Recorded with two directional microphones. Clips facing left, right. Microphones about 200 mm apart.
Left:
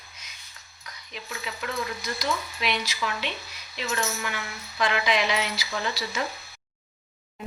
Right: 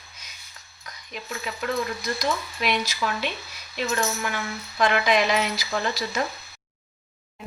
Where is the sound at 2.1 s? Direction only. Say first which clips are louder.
Right 1 dB; 50° right (ahead or behind).